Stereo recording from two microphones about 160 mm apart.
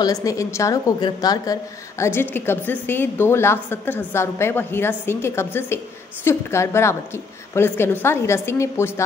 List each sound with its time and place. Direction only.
0.0 s a woman's voice: 20° left (ahead or behind)